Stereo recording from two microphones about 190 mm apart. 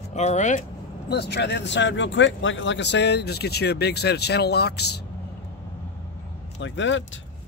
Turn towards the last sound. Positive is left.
turn(degrees=80)